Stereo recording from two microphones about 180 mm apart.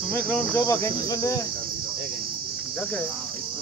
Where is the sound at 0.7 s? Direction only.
20° left (ahead or behind).